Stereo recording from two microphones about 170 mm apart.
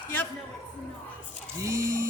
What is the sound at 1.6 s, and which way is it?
Printer, 20° right (ahead or behind).